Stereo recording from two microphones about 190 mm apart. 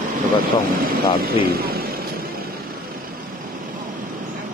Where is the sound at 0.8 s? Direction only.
50° right (ahead or behind).